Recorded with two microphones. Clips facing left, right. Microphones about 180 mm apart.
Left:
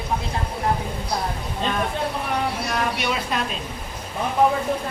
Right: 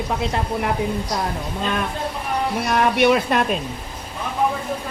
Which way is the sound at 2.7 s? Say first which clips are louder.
Right 12 dB; 55° right (ahead or behind).